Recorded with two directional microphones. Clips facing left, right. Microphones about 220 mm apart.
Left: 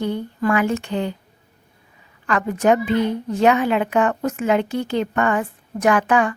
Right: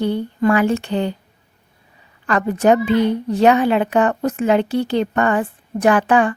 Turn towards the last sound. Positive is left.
turn(degrees=-30)  # may be behind; listen again after turning